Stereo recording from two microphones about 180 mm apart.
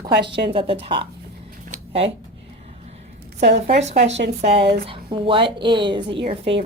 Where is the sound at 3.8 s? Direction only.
40° right (ahead or behind).